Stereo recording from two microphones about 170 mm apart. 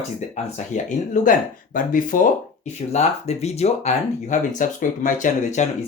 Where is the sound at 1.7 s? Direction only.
55° left (ahead or behind).